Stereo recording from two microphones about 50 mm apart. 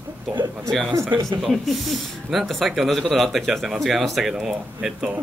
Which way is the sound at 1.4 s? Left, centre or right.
Centre.